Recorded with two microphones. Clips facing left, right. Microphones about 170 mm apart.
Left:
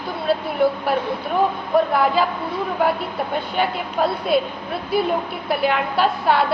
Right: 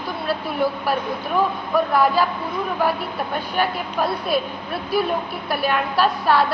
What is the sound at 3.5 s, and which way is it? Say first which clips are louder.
Speech: left 1 dB; 20° left (ahead or behind).